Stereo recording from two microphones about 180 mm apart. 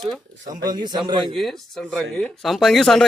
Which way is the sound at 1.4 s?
Centre (ahead or behind).